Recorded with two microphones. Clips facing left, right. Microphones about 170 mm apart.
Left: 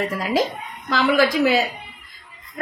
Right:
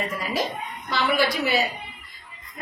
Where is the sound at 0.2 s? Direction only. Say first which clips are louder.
Left 6 dB; 90° left.